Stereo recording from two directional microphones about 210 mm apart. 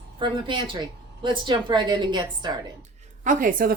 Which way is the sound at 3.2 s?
40° right (ahead or behind).